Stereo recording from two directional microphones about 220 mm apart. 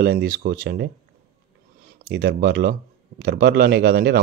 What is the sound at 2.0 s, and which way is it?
Speech, 45° right (ahead or behind).